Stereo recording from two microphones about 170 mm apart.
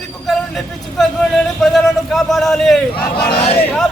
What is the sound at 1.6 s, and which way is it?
A man's voice, centre (ahead or behind).